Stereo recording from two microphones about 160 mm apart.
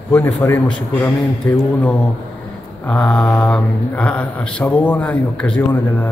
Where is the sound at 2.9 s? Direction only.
5° left (ahead or behind).